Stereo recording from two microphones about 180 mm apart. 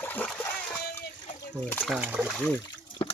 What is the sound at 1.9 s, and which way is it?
Speech, 10° right (ahead or behind).